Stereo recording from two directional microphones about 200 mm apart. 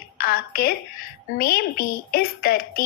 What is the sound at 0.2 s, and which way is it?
A woman's voice, 50° left (ahead or behind).